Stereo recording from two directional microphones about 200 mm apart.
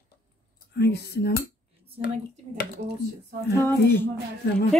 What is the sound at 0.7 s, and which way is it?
Speech, 55° left (ahead or behind).